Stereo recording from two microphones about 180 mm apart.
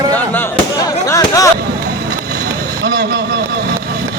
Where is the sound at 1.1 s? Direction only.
20° left (ahead or behind).